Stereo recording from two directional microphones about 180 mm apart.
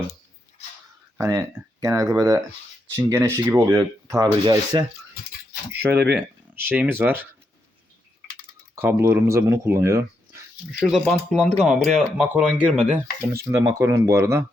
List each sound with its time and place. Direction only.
1.2 s speech: 20° right (ahead or behind)
6.1 s speech: 10° right (ahead or behind)
8.7 s speech: 15° right (ahead or behind)
10.8 s speech: centre (ahead or behind)
13.3 s speech: 15° right (ahead or behind)